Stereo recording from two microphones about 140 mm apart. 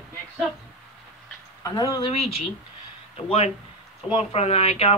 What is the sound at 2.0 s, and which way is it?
A woman's voice, 45° left (ahead or behind).